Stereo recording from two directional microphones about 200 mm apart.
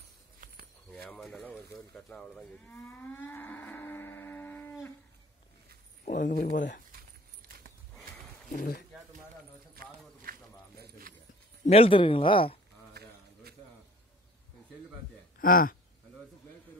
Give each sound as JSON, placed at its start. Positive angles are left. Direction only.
{"t": 1.0, "sound": "moo", "side_deg": 0}
{"t": 6.0, "sound": "speech", "side_deg": 40}
{"t": 6.9, "sound": "a sound", "side_deg": -45}
{"t": 8.5, "sound": "speech", "side_deg": 45}
{"t": 9.8, "sound": "run", "side_deg": -45}
{"t": 10.8, "sound": "a sound", "side_deg": -45}
{"t": 11.6, "sound": "speech", "side_deg": 30}
{"t": 12.9, "sound": "a sound", "side_deg": -50}
{"t": 15.3, "sound": "speech", "side_deg": 45}